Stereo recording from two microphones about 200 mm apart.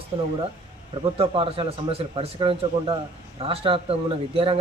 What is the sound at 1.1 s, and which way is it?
Speech, 30° right (ahead or behind).